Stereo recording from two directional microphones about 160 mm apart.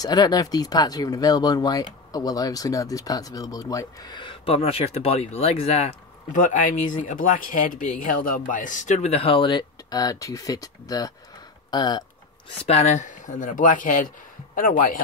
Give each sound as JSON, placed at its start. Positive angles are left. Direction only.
{"t": 0.0, "sound": "speech", "side_deg": 25}
{"t": 12.4, "sound": "speech", "side_deg": 40}